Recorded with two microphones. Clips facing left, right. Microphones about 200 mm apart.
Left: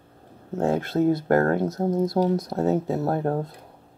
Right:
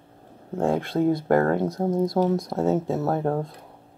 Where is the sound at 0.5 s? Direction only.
5° left (ahead or behind).